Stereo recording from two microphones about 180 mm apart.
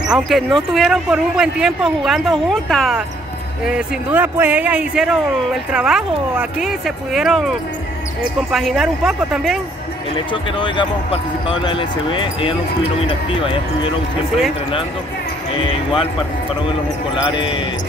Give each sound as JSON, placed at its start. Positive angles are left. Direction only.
{"t": 0.1, "sound": "speech", "side_deg": 0}
{"t": 10.1, "sound": "speech", "side_deg": 25}
{"t": 15.6, "sound": "speech", "side_deg": 30}
{"t": 17.1, "sound": "speech", "side_deg": 25}